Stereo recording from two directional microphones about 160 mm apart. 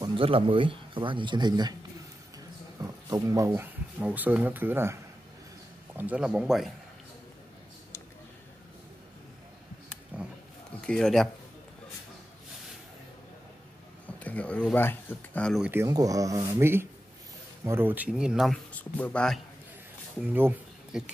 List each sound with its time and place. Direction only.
0.0 s speech: 35° right (ahead or behind)
2.8 s speech: 20° right (ahead or behind)
5.9 s speech: 10° right (ahead or behind)
10.1 s roaring cats: 10° right (ahead or behind)
10.8 s speech: 5° left (ahead or behind)
14.2 s a sound: 10° left (ahead or behind)
14.7 s speech: 15° left (ahead or behind)
15.6 s speech: 15° right (ahead or behind)
18.7 s speech: 10° left (ahead or behind)
20.2 s speech: 10° right (ahead or behind)